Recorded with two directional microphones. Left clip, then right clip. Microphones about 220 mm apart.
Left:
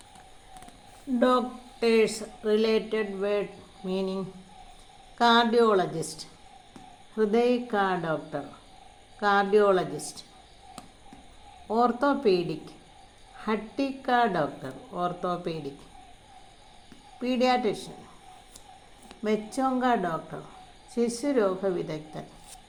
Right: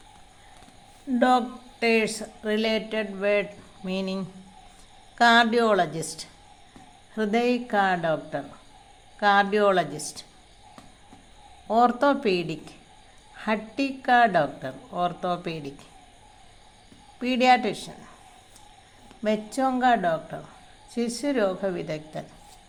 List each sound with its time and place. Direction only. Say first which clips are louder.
1.8 s a woman's voice: even; 30° right (ahead or behind)
7.2 s a woman's voice: left 1 dB; 30° right (ahead or behind)
11.7 s a woman's voice: right 4 dB; 30° right (ahead or behind)
17.2 s speech: right 5 dB; 30° right (ahead or behind)
19.2 s a woman's voice: right 3 dB; 25° right (ahead or behind)